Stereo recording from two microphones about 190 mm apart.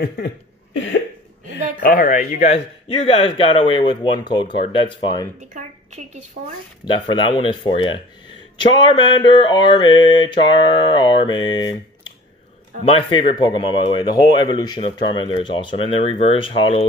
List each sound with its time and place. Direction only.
0.7 s a sound: 75° left (ahead or behind)
1.8 s speech: 45° left (ahead or behind); by 5.3 s 20° left (ahead or behind)
5.4 s a woman's voice: 40° right (ahead or behind)
6.9 s speech: 25° left (ahead or behind)